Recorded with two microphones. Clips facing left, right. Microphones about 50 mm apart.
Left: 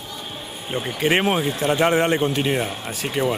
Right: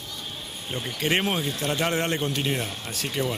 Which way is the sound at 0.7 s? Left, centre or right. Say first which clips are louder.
Left 5 dB; centre.